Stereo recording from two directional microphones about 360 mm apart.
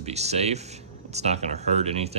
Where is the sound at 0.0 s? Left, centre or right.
Centre.